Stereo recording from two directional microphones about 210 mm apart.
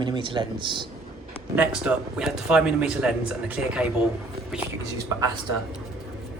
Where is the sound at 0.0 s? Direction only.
20° right (ahead or behind).